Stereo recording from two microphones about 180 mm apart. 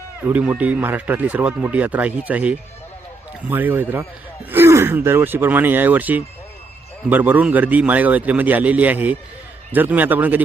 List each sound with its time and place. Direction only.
0.3 s speech: 5° right (ahead or behind)